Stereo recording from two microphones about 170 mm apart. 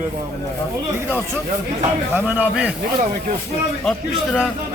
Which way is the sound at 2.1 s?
10° right (ahead or behind).